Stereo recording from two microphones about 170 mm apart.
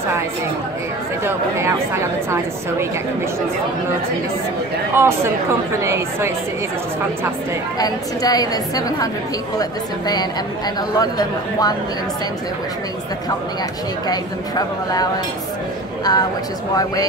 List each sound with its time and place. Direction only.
1.2 s speech: 15° right (ahead or behind)
4.9 s speech: 15° right (ahead or behind)
7.8 s a woman's voice: 20° left (ahead or behind)
14.0 s a woman's voice: 25° left (ahead or behind)